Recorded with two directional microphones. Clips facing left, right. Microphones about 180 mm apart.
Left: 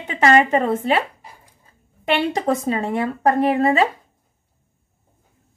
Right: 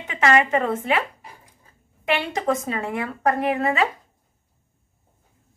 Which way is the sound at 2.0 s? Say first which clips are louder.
Left 3 dB; 35° left (ahead or behind).